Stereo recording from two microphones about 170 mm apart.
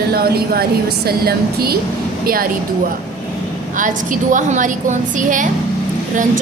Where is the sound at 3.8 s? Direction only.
50° right (ahead or behind).